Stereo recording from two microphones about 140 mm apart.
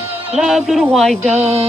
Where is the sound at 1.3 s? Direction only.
50° right (ahead or behind).